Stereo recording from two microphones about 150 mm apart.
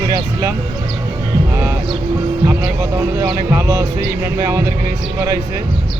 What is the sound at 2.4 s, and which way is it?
Speech, 20° right (ahead or behind).